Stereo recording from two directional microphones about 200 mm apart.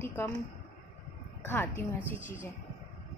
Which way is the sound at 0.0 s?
15° left (ahead or behind).